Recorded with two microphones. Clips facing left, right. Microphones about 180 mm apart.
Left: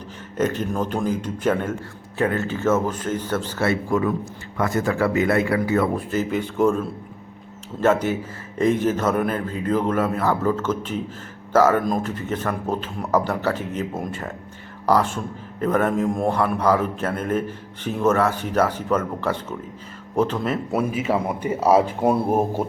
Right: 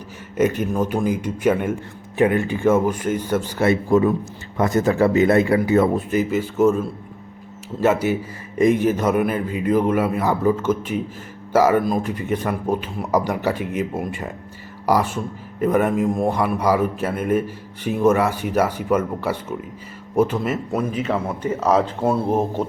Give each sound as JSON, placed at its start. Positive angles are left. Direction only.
{"t": 0.3, "sound": "a man's voice", "side_deg": -10}
{"t": 6.3, "sound": "a man's voice", "side_deg": -5}
{"t": 20.7, "sound": "speech", "side_deg": 10}